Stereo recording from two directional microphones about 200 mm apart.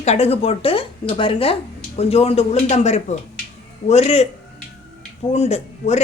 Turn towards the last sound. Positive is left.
turn(degrees=35)  # may be behind; listen again after turning